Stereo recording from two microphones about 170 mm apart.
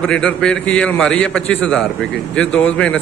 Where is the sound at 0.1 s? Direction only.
5° left (ahead or behind).